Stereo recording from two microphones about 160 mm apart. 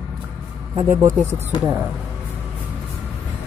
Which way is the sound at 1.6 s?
10° right (ahead or behind).